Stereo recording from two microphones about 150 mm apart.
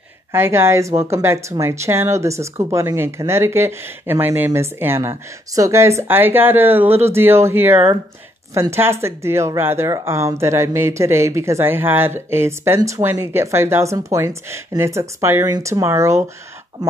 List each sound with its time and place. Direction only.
0.3 s a woman's voice: 15° right (ahead or behind)